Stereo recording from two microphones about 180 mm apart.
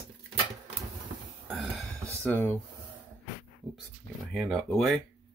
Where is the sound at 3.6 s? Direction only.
Centre (ahead or behind).